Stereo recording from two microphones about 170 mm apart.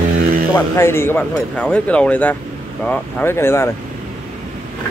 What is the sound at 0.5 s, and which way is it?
Speech, 15° left (ahead or behind).